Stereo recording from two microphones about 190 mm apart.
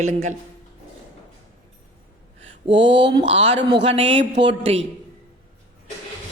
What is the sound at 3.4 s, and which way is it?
Speech, 30° right (ahead or behind).